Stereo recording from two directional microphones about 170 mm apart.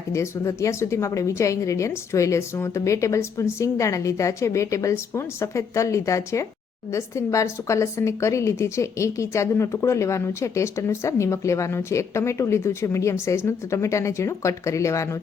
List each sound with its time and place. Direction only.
0.1 s a woman's voice: 20° left (ahead or behind)